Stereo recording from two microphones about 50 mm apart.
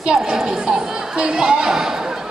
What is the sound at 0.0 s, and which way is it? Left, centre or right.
Speech, centre.